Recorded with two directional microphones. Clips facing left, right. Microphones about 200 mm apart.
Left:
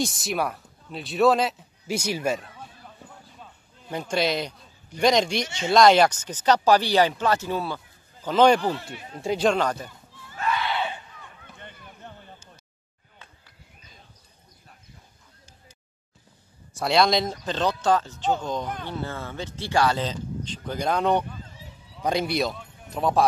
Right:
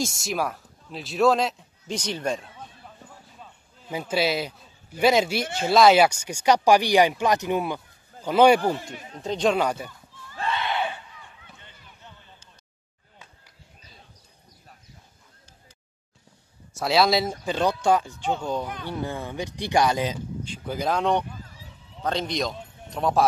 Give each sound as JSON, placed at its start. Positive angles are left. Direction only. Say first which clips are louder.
{"t": 0.0, "sound": "a man's voice", "louder": "left 1 dB", "side_deg": 0}
{"t": 9.2, "sound": "speech", "louder": "left 1 dB", "side_deg": 10}
{"t": 9.5, "sound": "speech", "louder": "right 3 dB", "side_deg": -10}
{"t": 10.3, "sound": "a sound", "louder": "left 1 dB", "side_deg": -30}
{"t": 10.6, "sound": "crowd", "louder": "right 1 dB", "side_deg": -15}
{"t": 11.5, "sound": "a sound", "louder": "left 7 dB", "side_deg": 55}
{"t": 16.7, "sound": "speech", "louder": "even", "side_deg": 0}
{"t": 21.5, "sound": "a sound", "louder": "left 2 dB", "side_deg": 15}
{"t": 22.8, "sound": "speech", "louder": "even", "side_deg": 0}